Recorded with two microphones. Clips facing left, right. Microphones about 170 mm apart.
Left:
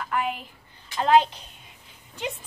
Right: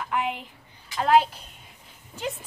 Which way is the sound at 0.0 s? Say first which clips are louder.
Even; 15° right (ahead or behind).